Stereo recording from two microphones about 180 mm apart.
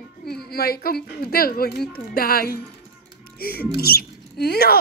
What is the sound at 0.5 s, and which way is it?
Speech, 60° left (ahead or behind).